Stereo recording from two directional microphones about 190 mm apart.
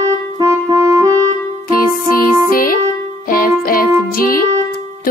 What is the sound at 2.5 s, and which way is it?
Music, 50° left (ahead or behind).